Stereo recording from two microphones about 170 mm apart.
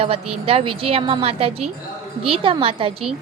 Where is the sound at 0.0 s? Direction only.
35° right (ahead or behind).